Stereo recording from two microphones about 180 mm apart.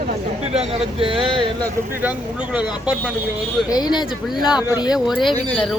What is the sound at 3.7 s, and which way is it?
Speech, 25° left (ahead or behind).